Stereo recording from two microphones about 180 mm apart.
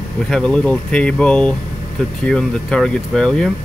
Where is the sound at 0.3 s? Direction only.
5° left (ahead or behind).